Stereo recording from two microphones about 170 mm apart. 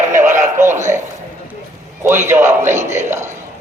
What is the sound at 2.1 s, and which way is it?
A man's voice, 15° right (ahead or behind).